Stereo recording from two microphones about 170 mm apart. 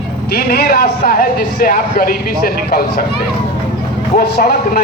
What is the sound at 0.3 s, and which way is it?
A man's voice, 65° left (ahead or behind).